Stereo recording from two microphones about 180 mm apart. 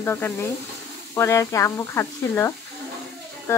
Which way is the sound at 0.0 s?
15° left (ahead or behind).